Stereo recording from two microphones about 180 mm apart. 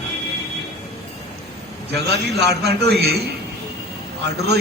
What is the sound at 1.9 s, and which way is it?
A man's voice, 65° right (ahead or behind).